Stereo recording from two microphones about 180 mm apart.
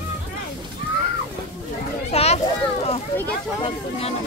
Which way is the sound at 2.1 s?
35° left (ahead or behind).